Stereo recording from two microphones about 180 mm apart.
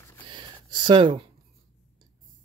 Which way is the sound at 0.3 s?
25° right (ahead or behind).